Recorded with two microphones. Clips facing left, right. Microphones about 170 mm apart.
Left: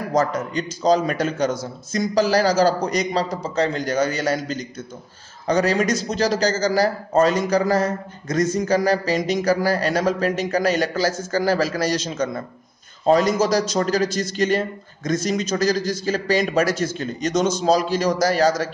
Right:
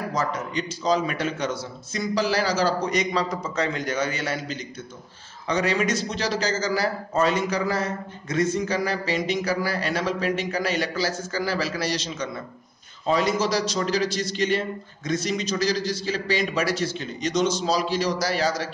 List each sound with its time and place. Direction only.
0.1 s a man's voice: 45° left (ahead or behind)